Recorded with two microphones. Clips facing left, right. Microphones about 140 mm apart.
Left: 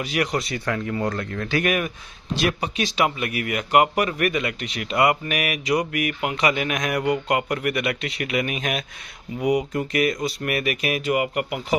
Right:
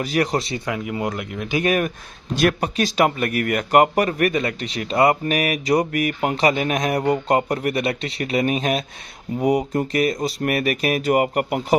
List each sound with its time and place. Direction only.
0.0 s speech: 35° right (ahead or behind)
0.7 s speech: 10° right (ahead or behind)
2.3 s speech: 50° right (ahead or behind); by 8.8 s 35° right (ahead or behind)
9.4 s speech: 50° right (ahead or behind)
9.7 s speech: 35° right (ahead or behind)